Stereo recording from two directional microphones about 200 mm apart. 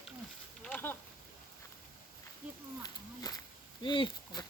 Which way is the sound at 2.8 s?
20° left (ahead or behind).